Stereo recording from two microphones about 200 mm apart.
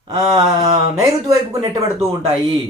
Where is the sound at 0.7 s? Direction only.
15° right (ahead or behind).